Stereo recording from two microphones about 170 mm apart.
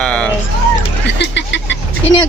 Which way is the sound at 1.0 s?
90° left.